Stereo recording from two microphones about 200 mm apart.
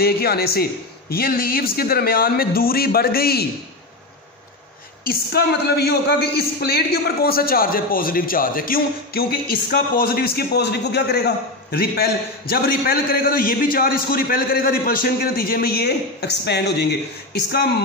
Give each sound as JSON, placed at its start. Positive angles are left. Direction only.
{"t": 0.0, "sound": "a woman's voice", "side_deg": 50}
{"t": 5.0, "sound": "a woman's voice", "side_deg": 50}